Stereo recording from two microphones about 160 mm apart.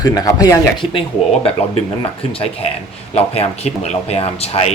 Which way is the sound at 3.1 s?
40° left (ahead or behind).